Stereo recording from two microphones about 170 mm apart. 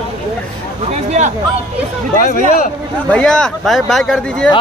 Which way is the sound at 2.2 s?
55° left (ahead or behind).